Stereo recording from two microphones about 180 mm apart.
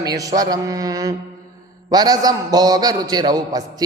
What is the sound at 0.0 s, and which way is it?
A man's voice, 20° right (ahead or behind).